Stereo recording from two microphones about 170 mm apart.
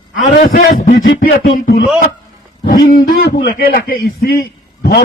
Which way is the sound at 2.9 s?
60° left (ahead or behind).